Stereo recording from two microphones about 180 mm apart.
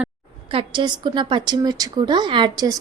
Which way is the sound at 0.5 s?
30° right (ahead or behind).